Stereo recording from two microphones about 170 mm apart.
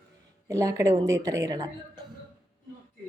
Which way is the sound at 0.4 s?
20° right (ahead or behind).